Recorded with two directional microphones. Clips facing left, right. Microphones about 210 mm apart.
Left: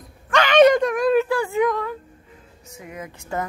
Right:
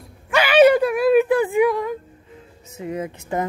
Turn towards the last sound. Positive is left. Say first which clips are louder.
# right 4 dB
turn(degrees=-25)  # may be behind; listen again after turning